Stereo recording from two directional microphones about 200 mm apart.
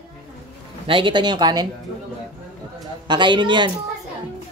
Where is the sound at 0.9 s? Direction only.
25° right (ahead or behind).